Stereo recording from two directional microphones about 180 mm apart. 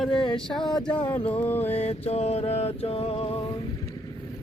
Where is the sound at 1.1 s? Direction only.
10° left (ahead or behind).